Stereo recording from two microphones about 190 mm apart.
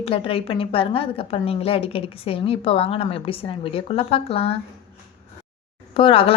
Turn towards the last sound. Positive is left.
turn(degrees=30)  # may be behind; listen again after turning